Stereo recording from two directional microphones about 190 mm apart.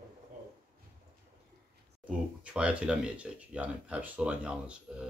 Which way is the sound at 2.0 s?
5° right (ahead or behind).